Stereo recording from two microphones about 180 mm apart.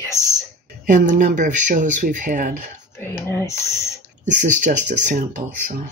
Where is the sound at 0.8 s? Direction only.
45° right (ahead or behind).